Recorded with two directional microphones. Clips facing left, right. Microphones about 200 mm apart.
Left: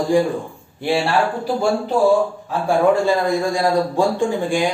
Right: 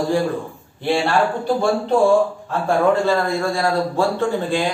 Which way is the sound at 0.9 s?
5° left (ahead or behind).